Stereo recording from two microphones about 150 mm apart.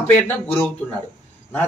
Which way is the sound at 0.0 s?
10° left (ahead or behind).